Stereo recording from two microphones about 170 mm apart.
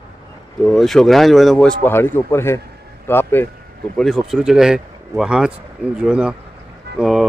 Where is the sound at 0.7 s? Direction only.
Centre (ahead or behind).